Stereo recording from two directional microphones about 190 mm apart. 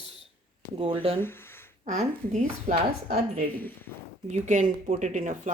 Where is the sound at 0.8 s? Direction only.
30° right (ahead or behind).